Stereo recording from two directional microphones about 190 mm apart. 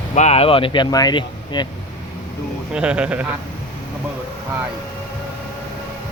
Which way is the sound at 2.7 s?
5° right (ahead or behind).